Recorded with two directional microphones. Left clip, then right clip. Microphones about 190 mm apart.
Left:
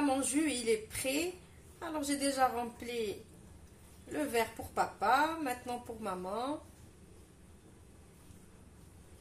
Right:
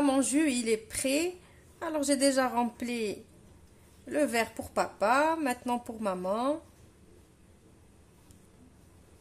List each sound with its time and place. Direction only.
0.0 s a woman's voice: 55° right (ahead or behind)
4.1 s a woman's voice: 60° right (ahead or behind)